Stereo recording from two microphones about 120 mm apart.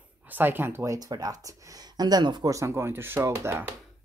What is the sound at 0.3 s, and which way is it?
Speech, 15° right (ahead or behind).